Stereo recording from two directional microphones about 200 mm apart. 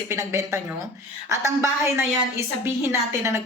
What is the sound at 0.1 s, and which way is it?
A woman's voice, 15° right (ahead or behind).